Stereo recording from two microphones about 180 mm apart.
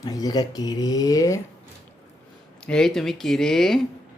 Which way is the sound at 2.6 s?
5° left (ahead or behind).